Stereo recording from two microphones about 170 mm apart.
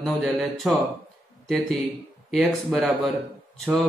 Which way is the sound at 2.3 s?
Centre (ahead or behind).